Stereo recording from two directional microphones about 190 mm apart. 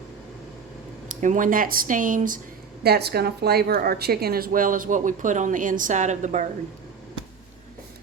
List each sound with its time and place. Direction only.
1.0 s a woman's voice: 40° right (ahead or behind)
2.8 s a woman's voice: 55° right (ahead or behind); by 6.4 s 40° right (ahead or behind)